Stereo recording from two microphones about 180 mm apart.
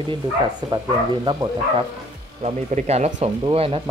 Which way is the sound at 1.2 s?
25° right (ahead or behind).